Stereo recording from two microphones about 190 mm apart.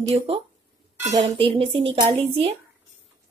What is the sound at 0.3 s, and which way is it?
Speech, 30° right (ahead or behind).